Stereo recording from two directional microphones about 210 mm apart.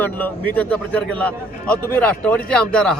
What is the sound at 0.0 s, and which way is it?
A man's voice, 10° left (ahead or behind).